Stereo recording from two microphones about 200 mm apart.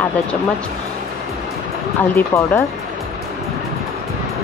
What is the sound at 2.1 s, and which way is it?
Speech, 10° left (ahead or behind).